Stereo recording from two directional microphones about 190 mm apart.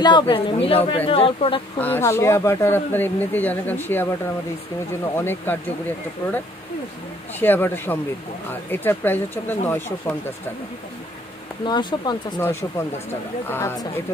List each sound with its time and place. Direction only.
0.0 s a woman's voice: 25° left (ahead or behind)
1.8 s speech: 10° left (ahead or behind)
5.1 s speech: 10° left (ahead or behind)
11.6 s a woman's voice: 25° left (ahead or behind)